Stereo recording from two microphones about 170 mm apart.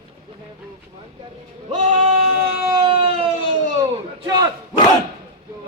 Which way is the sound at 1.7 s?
45° right (ahead or behind).